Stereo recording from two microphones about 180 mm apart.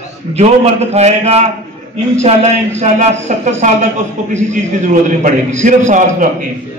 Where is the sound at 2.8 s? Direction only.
40° right (ahead or behind).